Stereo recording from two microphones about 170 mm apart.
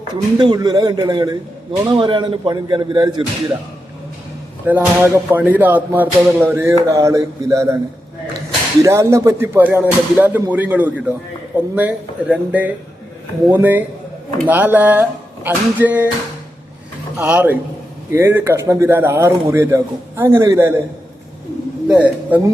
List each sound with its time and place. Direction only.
0.1 s speech: 25° right (ahead or behind)
4.6 s speech: 10° right (ahead or behind)
8.8 s speech: 15° right (ahead or behind)
17.2 s speech: 10° right (ahead or behind)
21.8 s a man's voice: 5° right (ahead or behind)